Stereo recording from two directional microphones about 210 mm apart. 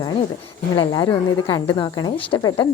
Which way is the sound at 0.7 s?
20° left (ahead or behind).